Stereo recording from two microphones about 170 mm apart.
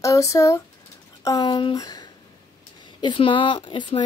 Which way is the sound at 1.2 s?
25° left (ahead or behind).